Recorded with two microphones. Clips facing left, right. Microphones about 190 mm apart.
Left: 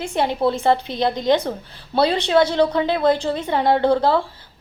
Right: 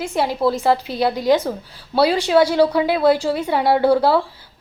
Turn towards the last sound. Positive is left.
turn(degrees=-10)  # may be behind; listen again after turning